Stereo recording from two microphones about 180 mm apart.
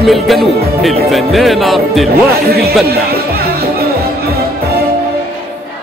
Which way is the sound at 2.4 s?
60° right (ahead or behind).